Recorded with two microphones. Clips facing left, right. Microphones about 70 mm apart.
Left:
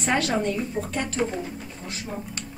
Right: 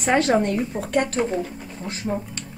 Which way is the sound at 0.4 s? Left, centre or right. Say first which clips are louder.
Right 3 dB; right.